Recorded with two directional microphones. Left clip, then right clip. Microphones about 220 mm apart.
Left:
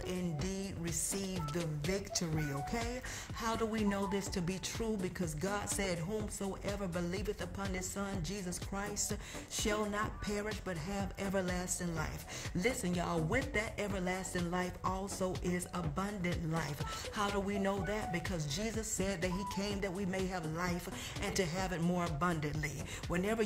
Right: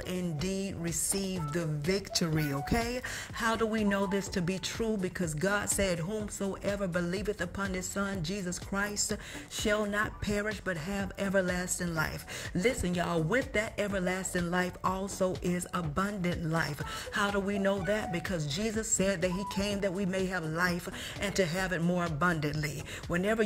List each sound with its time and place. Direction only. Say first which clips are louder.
0.1 s speech: right 7 dB; 20° right (ahead or behind)